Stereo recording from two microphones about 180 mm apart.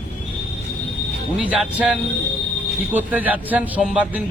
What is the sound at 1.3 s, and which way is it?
Speech, 5° right (ahead or behind).